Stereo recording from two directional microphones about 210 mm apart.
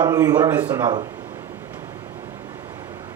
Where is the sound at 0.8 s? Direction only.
20° right (ahead or behind).